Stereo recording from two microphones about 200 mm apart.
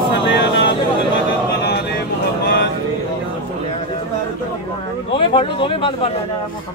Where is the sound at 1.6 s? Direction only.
55° left (ahead or behind).